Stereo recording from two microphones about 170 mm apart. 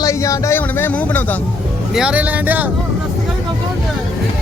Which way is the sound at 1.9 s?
5° right (ahead or behind).